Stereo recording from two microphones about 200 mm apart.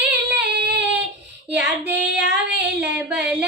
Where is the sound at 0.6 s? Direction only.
55° right (ahead or behind).